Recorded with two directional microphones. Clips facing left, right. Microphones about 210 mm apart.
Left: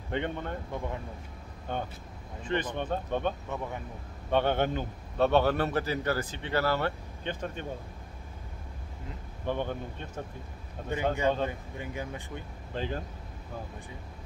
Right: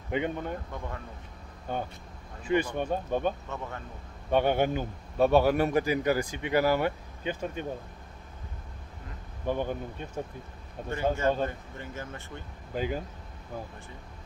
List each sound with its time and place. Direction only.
0.1 s speech: 10° right (ahead or behind)
0.7 s speech: 15° left (ahead or behind)
1.7 s speech: 5° right (ahead or behind)
3.4 s speech: 15° left (ahead or behind)
4.3 s speech: 10° right (ahead or behind)
9.5 s speech: 10° right (ahead or behind)
11.4 s speech: 15° left (ahead or behind)
12.7 s speech: 10° right (ahead or behind)